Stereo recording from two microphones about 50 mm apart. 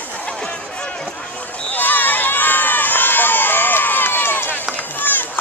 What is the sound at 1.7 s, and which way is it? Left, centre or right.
Crowd, left.